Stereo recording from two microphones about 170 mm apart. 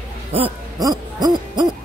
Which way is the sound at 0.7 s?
20° right (ahead or behind).